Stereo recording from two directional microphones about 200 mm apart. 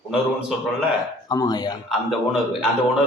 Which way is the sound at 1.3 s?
20° left (ahead or behind).